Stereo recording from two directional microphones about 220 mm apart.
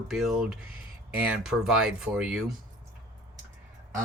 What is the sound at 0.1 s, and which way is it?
Speech, centre (ahead or behind).